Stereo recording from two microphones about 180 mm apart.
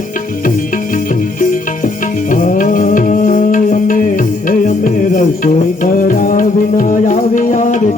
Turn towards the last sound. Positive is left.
turn(degrees=45)  # may be behind; listen again after turning